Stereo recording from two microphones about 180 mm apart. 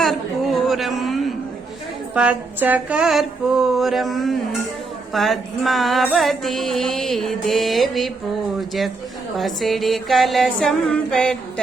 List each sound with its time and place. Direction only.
0.0 s a sound: centre (ahead or behind)
2.1 s music: 10° right (ahead or behind)
9.4 s music: centre (ahead or behind)